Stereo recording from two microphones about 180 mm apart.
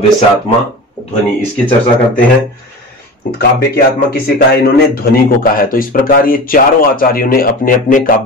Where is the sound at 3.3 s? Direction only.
60° left (ahead or behind).